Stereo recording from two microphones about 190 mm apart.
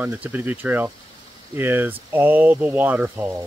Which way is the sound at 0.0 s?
10° right (ahead or behind).